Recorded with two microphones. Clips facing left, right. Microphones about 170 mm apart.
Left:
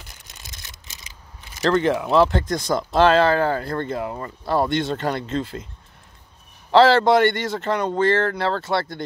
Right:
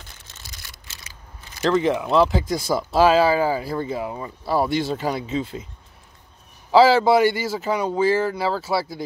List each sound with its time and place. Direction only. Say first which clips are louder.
0.1 s camera: left 1 dB; 15° left (ahead or behind)
1.6 s speech: even; centre (ahead or behind)
6.7 s speech: even; centre (ahead or behind)